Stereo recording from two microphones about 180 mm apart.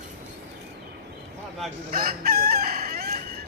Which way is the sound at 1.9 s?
55° right (ahead or behind).